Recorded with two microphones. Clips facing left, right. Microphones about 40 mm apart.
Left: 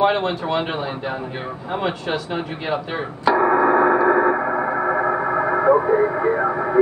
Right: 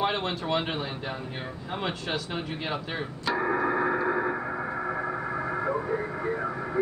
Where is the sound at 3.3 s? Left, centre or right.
Left.